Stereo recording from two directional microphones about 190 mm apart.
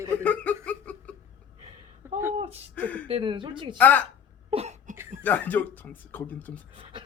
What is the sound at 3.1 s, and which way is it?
Speech, 25° right (ahead or behind).